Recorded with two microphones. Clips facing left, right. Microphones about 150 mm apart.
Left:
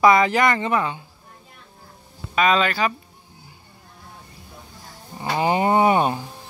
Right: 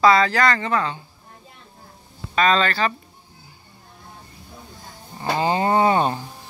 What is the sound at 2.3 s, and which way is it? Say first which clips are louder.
Speech: even; 10° left (ahead or behind).